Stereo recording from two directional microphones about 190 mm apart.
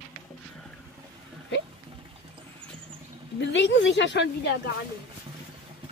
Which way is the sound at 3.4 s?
70° left (ahead or behind).